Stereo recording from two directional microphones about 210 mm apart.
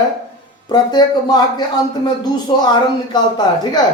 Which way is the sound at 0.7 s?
20° left (ahead or behind).